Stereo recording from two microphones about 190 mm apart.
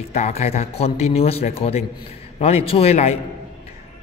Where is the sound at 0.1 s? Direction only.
35° left (ahead or behind).